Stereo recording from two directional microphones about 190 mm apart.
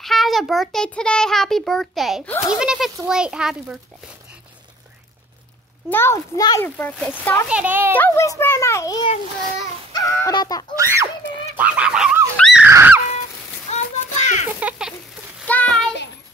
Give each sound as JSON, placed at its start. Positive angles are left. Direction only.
{"t": 0.0, "sound": "a child's voice", "side_deg": 0}
{"t": 2.3, "sound": "a child's voice", "side_deg": 20}
{"t": 2.6, "sound": "a child's voice", "side_deg": -5}
{"t": 5.9, "sound": "a child's voice", "side_deg": 10}
{"t": 7.4, "sound": "a woman's voice", "side_deg": -5}
{"t": 7.9, "sound": "a child's voice", "side_deg": 10}
{"t": 10.8, "sound": "a woman's voice", "side_deg": -15}
{"t": 11.5, "sound": "goose", "side_deg": -10}
{"t": 12.4, "sound": "a sound", "side_deg": 0}
{"t": 12.6, "sound": "a sound", "side_deg": -10}
{"t": 13.7, "sound": "child singing", "side_deg": 40}
{"t": 14.6, "sound": "a sound", "side_deg": -5}
{"t": 15.4, "sound": "child singing", "side_deg": 10}